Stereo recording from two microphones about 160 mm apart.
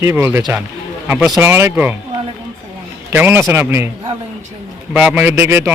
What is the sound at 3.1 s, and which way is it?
Speech, 15° right (ahead or behind).